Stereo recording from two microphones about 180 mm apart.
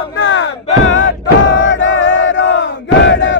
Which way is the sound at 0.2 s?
90° left.